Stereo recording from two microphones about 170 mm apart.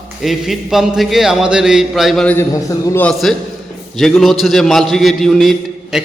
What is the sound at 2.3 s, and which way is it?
Speech, 15° left (ahead or behind).